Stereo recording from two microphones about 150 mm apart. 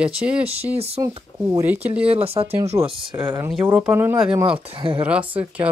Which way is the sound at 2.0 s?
40° right (ahead or behind).